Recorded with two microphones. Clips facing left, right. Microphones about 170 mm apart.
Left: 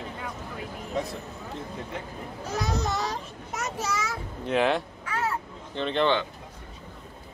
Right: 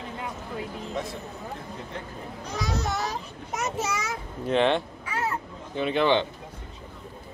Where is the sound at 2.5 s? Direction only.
Centre (ahead or behind).